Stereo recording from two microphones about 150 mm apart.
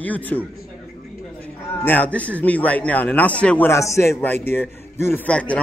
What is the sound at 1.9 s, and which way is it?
A man's voice, 10° left (ahead or behind).